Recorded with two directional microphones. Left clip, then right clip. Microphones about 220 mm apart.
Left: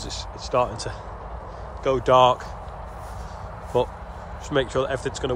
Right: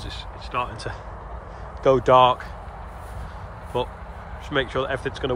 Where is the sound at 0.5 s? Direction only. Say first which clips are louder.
Left 5 dB; 25° left (ahead or behind).